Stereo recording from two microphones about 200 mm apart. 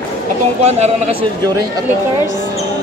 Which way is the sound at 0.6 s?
35° right (ahead or behind).